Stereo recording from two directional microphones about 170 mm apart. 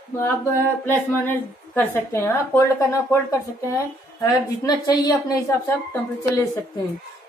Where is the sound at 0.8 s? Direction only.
10° left (ahead or behind).